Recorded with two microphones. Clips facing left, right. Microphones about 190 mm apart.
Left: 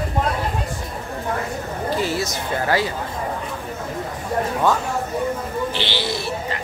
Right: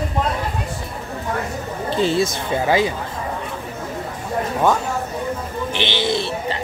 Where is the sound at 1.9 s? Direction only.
25° right (ahead or behind).